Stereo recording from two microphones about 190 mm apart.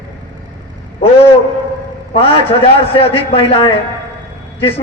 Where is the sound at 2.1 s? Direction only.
30° left (ahead or behind).